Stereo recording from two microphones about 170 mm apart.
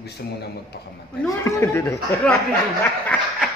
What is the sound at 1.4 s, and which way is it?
Speech, 15° left (ahead or behind).